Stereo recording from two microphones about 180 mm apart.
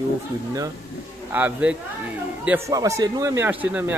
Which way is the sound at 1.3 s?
10° right (ahead or behind).